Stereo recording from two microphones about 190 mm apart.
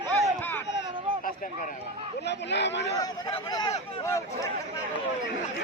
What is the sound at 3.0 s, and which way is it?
Speech, 20° left (ahead or behind).